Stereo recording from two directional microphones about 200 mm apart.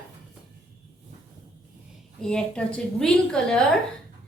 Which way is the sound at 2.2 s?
5° left (ahead or behind).